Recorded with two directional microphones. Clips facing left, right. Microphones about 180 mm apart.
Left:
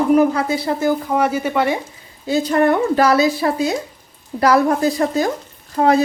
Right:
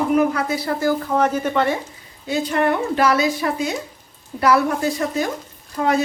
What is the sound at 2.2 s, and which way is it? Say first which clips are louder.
Speech: left 4 dB; 35° left (ahead or behind).